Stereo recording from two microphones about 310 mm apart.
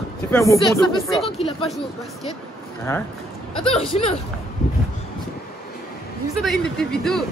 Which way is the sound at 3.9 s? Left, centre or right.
Left.